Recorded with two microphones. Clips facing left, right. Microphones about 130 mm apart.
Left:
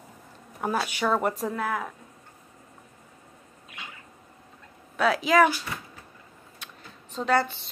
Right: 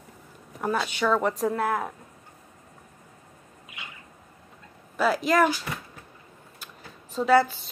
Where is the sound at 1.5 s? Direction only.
35° right (ahead or behind).